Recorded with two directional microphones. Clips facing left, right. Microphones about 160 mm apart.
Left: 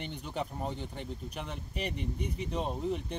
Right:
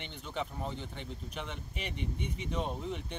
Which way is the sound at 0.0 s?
40° left (ahead or behind).